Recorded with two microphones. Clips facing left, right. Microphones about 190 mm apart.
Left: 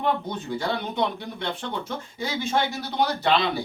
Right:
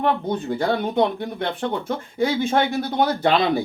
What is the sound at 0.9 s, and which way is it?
Speech, 50° right (ahead or behind).